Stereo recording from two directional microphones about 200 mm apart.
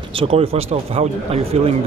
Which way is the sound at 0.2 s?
30° right (ahead or behind).